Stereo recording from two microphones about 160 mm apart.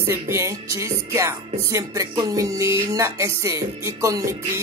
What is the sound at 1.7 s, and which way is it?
Speech, 20° right (ahead or behind).